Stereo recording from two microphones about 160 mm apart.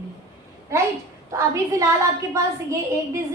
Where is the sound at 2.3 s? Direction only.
20° right (ahead or behind).